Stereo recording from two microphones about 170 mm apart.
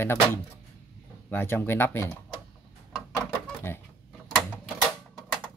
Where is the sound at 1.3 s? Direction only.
15° left (ahead or behind).